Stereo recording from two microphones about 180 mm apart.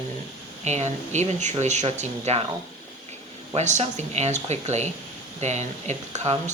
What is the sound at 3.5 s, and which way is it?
Speech, 40° right (ahead or behind).